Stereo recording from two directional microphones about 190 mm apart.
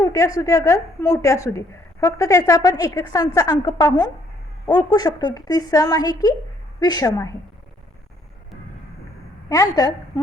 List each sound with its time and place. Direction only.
0.0 s a woman's voice: 15° left (ahead or behind)
9.5 s a woman's voice: 15° left (ahead or behind)